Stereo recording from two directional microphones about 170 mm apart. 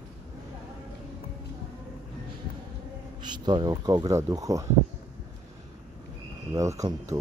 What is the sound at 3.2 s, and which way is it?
Speech, 25° right (ahead or behind).